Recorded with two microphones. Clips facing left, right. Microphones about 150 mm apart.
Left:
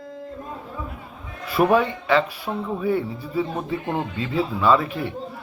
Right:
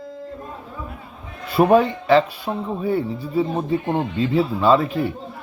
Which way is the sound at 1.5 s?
30° right (ahead or behind).